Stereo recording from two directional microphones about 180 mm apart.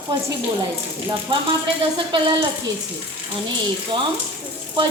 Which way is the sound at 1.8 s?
25° right (ahead or behind).